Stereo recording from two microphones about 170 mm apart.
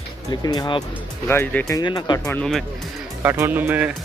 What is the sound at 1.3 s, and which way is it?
Speech, 15° left (ahead or behind).